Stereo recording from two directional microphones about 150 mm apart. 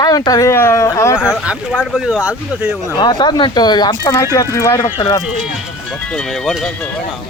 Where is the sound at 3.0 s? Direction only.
30° left (ahead or behind).